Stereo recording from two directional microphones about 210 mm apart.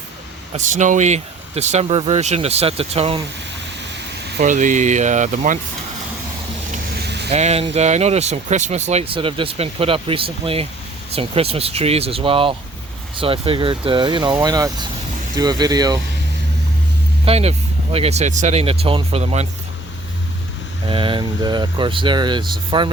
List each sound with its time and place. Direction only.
0.5 s speech: 35° right (ahead or behind)
4.4 s speech: 35° right (ahead or behind)
6.9 s vehicle: 55° right (ahead or behind)
7.3 s speech: 30° right (ahead or behind)
17.2 s speech: 30° right (ahead or behind)
20.8 s speech: 25° right (ahead or behind)